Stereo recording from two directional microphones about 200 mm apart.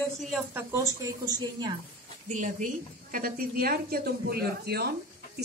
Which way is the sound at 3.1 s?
45° right (ahead or behind).